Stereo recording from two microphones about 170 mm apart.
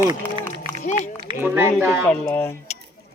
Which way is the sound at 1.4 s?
15° right (ahead or behind).